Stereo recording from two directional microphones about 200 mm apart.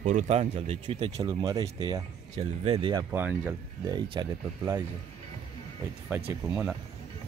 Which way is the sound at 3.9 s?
20° right (ahead or behind).